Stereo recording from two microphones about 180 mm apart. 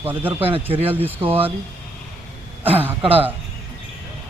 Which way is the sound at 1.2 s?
30° right (ahead or behind).